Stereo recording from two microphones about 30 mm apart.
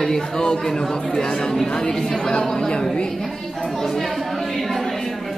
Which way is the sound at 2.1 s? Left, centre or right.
Left.